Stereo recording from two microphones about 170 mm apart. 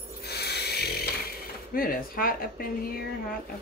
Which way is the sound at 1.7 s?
60° left (ahead or behind).